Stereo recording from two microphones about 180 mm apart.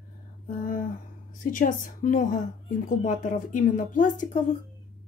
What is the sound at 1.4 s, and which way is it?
Speech, 50° left (ahead or behind).